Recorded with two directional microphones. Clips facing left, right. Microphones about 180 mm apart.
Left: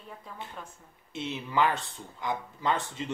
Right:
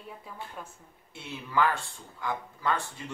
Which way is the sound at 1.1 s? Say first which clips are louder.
Left 1 dB; 20° left (ahead or behind).